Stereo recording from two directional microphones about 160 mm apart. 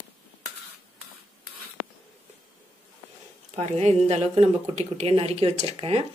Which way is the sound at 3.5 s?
40° right (ahead or behind).